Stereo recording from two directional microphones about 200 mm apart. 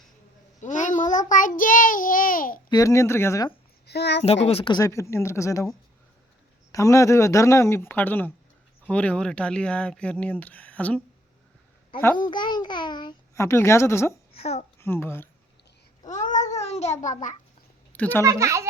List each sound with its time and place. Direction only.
0.6 s a child's voice: 40° left (ahead or behind)
2.6 s speech: 15° left (ahead or behind)
3.8 s a child's voice: 55° left (ahead or behind)
4.4 s speech: 25° left (ahead or behind)
4.8 s speech: 15° left (ahead or behind)
6.7 s speech: 15° left (ahead or behind)
12.3 s speech: 20° left (ahead or behind)
14.3 s a child's voice: 30° left (ahead or behind)
14.8 s speech: 10° left (ahead or behind)
16.0 s babbling: 40° left (ahead or behind)
16.4 s a sound: 35° left (ahead or behind)
17.9 s a woman's voice: 5° left (ahead or behind)
18.2 s speech: 15° right (ahead or behind)